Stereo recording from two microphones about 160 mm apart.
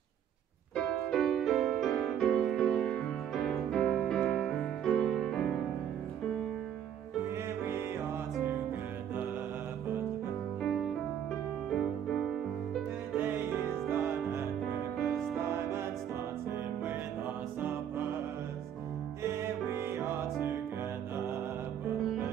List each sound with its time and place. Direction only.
0.7 s music: centre (ahead or behind)
7.2 s music: 15° right (ahead or behind)
10.6 s music: centre (ahead or behind)
13.2 s music: 10° right (ahead or behind)
15.0 s music: centre (ahead or behind)
15.5 s music: 15° right (ahead or behind)
17.6 s music: 10° right (ahead or behind)
19.9 s music: 15° right (ahead or behind)